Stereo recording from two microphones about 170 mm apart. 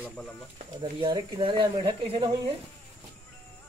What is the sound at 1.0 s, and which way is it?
Speech, 30° right (ahead or behind).